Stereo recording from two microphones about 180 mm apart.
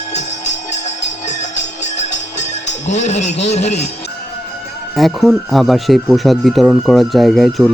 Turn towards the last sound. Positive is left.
turn(degrees=0)  # may be behind; listen again after turning